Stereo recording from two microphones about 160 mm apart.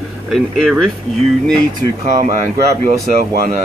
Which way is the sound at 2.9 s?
60° right (ahead or behind).